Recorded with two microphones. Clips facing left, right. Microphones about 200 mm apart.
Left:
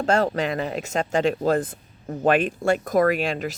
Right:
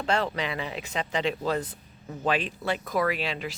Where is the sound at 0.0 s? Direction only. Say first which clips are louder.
Left 6 dB; 45° left (ahead or behind).